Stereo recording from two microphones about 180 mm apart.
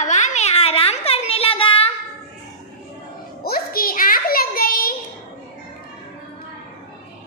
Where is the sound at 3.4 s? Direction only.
55° left (ahead or behind).